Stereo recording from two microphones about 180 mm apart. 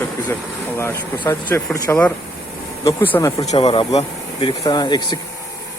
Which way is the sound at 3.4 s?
35° left (ahead or behind).